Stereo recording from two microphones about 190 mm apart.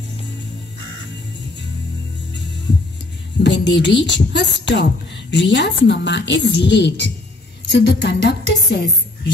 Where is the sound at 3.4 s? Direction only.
70° left (ahead or behind).